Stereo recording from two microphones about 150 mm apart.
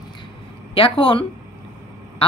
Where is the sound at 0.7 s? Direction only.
35° left (ahead or behind).